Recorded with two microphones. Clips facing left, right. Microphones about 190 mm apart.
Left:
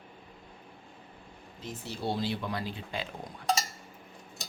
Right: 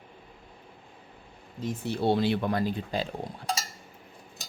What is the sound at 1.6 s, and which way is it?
Speech, 55° right (ahead or behind).